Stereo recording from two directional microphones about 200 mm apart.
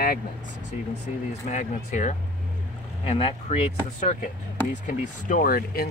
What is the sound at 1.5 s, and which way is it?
Speech, 35° left (ahead or behind).